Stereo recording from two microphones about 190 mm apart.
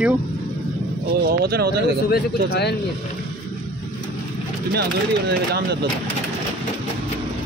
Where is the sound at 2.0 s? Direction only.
55° left (ahead or behind).